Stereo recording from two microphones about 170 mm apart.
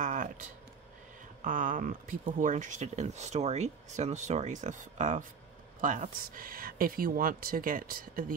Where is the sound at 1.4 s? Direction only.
50° right (ahead or behind).